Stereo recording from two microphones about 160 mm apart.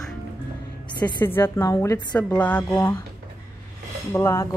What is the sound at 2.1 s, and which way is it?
Speech, 10° left (ahead or behind).